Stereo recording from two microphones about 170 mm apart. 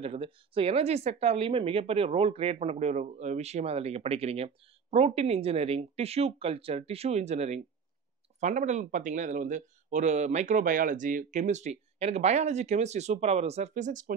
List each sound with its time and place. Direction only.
0.0 s speech: 35° right (ahead or behind)